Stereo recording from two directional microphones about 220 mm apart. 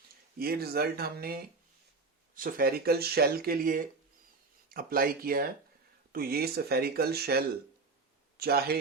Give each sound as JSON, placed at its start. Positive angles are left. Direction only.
{"t": 0.3, "sound": "speech", "side_deg": -45}